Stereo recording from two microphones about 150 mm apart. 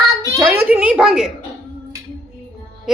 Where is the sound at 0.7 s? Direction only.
10° right (ahead or behind).